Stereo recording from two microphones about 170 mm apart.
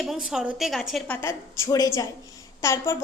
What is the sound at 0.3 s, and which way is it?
A woman's voice, 5° right (ahead or behind).